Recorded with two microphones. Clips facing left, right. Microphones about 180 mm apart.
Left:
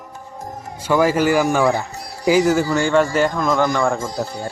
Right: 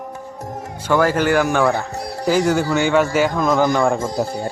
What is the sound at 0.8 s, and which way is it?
Speech, 10° left (ahead or behind).